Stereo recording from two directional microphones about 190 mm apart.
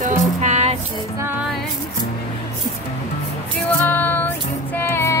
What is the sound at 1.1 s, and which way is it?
Music, 10° right (ahead or behind).